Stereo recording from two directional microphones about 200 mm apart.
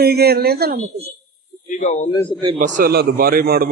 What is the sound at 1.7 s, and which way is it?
Speech, 40° left (ahead or behind).